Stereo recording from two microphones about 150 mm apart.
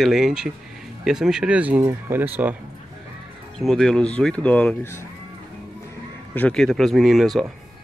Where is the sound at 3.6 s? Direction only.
5° left (ahead or behind).